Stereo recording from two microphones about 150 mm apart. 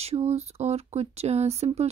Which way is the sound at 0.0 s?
45° right (ahead or behind).